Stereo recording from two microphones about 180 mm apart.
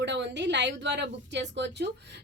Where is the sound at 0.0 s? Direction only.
75° right (ahead or behind).